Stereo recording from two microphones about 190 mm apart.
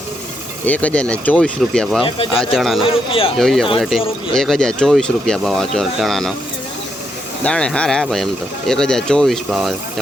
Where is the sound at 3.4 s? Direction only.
Centre (ahead or behind).